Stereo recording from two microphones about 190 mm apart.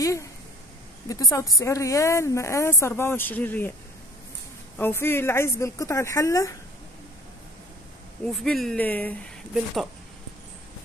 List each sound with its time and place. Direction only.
0.0 s speech: 15° left (ahead or behind)
4.7 s speech: 10° left (ahead or behind)
8.3 s speech: centre (ahead or behind)